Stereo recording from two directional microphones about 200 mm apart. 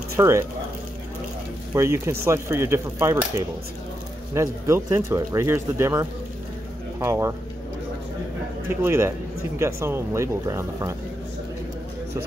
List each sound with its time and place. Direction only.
0.1 s speech: 15° right (ahead or behind)
1.7 s speech: 15° right (ahead or behind)
8.6 s speech: 10° right (ahead or behind)